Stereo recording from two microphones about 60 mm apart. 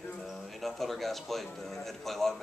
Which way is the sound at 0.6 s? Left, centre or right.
Centre.